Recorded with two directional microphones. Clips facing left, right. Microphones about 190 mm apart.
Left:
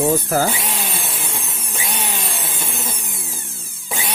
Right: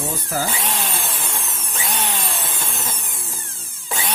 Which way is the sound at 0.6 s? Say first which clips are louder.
Right 1 dB; 10° left (ahead or behind).